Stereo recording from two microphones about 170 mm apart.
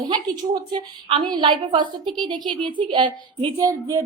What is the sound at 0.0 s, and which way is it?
A woman's voice, 25° right (ahead or behind).